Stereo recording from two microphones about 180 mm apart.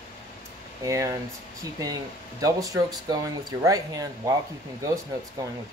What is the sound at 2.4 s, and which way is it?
Speech, 20° right (ahead or behind).